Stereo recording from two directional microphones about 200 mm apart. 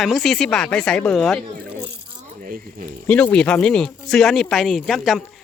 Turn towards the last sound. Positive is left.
turn(degrees=0)  # may be behind; listen again after turning